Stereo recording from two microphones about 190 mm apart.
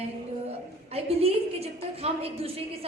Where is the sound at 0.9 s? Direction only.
30° right (ahead or behind).